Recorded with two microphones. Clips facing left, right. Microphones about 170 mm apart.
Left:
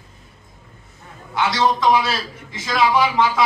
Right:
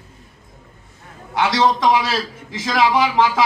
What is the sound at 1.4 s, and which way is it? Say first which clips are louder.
A man's voice: right 2 dB; 75° right (ahead or behind).